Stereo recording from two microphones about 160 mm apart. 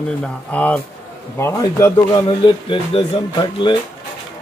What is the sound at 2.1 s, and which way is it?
Speech, 30° left (ahead or behind).